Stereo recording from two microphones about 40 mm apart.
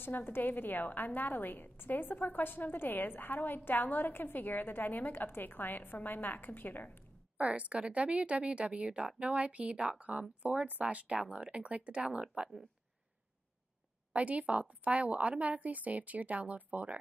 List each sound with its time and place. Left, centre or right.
0.0 s a woman's voice: left
7.3 s a woman's voice: right
14.1 s a woman's voice: right